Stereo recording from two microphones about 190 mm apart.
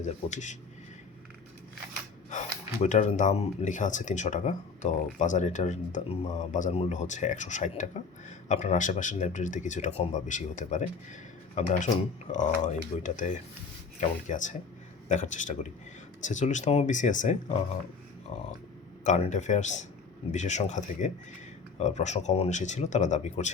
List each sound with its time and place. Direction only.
0.0 s speech: 40° left (ahead or behind)
2.8 s speech: 40° left (ahead or behind)
19.0 s speech: 40° left (ahead or behind)